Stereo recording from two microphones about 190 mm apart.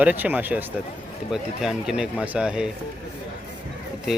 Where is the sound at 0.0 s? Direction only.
10° right (ahead or behind).